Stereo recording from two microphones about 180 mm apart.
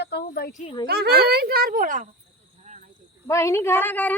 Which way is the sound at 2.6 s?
40° right (ahead or behind).